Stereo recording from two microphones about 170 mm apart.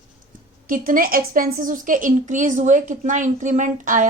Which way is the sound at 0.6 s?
50° right (ahead or behind).